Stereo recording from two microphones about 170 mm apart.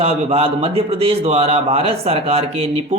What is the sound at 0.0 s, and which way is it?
A man's voice, 35° right (ahead or behind).